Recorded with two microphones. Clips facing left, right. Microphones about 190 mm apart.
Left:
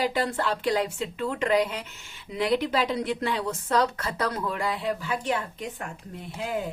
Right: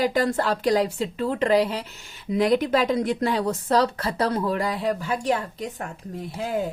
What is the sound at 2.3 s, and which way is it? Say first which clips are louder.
Speech: right 5 dB; 45° right (ahead or behind).